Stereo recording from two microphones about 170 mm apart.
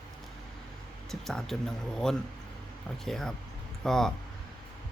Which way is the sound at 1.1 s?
Centre (ahead or behind).